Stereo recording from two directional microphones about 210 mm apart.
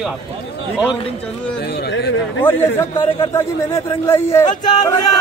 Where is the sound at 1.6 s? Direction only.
50° left (ahead or behind).